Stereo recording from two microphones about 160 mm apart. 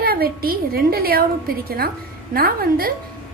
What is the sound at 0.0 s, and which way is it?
A woman's voice, 70° right (ahead or behind).